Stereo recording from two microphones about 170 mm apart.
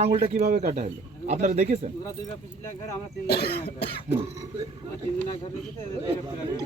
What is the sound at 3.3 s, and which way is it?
Speech, 70° left (ahead or behind).